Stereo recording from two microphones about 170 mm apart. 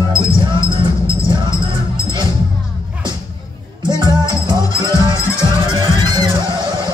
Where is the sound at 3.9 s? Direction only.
25° right (ahead or behind).